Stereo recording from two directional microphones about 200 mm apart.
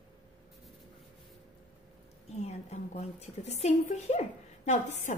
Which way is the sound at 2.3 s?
35° left (ahead or behind).